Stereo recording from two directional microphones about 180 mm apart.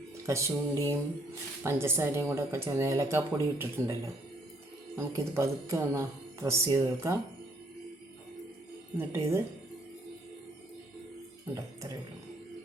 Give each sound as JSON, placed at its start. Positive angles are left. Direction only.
{"t": 0.3, "sound": "speech", "side_deg": -15}
{"t": 9.0, "sound": "speech", "side_deg": -15}
{"t": 11.5, "sound": "speech", "side_deg": -15}